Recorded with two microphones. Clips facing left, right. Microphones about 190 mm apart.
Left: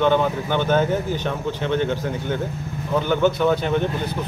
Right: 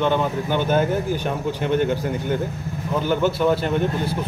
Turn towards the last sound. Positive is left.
turn(degrees=-5)  # may be behind; listen again after turning